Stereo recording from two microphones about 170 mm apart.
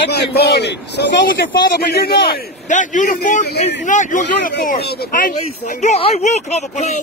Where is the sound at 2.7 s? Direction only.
50° left (ahead or behind); by 5.3 s 65° left (ahead or behind).